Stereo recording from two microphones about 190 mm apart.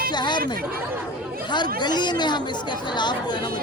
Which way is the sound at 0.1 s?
25° left (ahead or behind).